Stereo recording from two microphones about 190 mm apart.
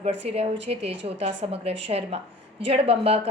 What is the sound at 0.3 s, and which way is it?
A woman's voice, 30° right (ahead or behind).